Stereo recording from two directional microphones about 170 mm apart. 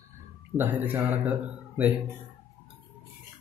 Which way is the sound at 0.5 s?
10° right (ahead or behind).